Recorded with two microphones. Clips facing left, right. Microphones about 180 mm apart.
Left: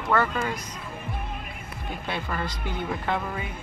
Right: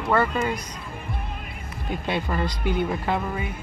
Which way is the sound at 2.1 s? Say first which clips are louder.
Right 5 dB; 15° right (ahead or behind).